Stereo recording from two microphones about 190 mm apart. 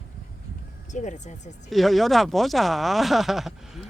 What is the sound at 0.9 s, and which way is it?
Speech, 40° left (ahead or behind).